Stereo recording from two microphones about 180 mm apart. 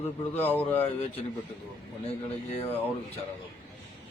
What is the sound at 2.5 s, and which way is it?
Speech, 35° left (ahead or behind).